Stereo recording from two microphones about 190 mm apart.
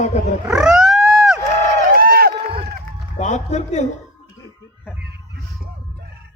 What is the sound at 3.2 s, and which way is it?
Music, 35° left (ahead or behind).